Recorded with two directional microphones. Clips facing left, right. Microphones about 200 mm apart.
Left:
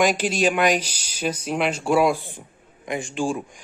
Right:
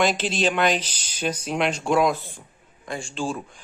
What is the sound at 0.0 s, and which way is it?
Speech, 10° left (ahead or behind).